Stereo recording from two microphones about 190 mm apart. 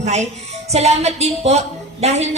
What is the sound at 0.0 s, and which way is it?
A woman's voice, 35° right (ahead or behind).